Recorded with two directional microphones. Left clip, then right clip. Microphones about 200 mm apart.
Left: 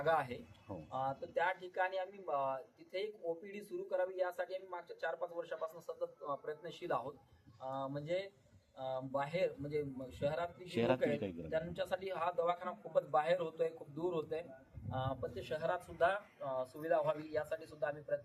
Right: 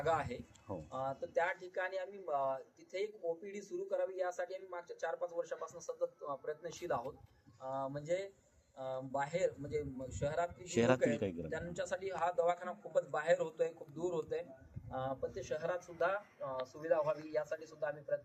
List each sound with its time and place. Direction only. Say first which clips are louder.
0.0 s speech: left 1 dB; centre (ahead or behind)
10.6 s speech: right 2 dB; 45° right (ahead or behind)
11.5 s speech: left 2 dB; centre (ahead or behind)